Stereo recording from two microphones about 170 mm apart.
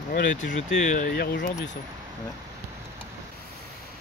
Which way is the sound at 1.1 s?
65° left (ahead or behind).